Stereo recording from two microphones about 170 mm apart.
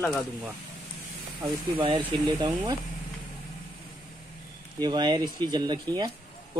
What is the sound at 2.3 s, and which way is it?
Speech, 25° right (ahead or behind).